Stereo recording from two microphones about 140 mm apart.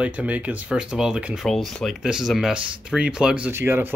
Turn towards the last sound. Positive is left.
turn(degrees=-15)  # may be behind; listen again after turning